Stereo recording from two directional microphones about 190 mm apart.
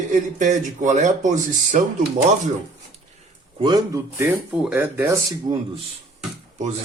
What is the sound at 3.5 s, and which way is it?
Speech, 25° right (ahead or behind).